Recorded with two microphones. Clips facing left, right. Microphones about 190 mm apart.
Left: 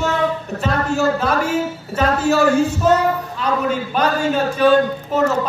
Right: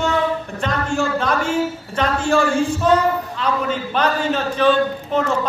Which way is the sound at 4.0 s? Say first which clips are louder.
Left 1 dB; 10° left (ahead or behind).